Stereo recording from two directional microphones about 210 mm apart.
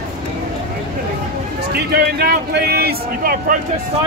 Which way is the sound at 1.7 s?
50° right (ahead or behind).